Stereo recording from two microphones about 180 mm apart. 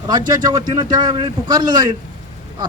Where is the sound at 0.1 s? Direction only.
20° right (ahead or behind).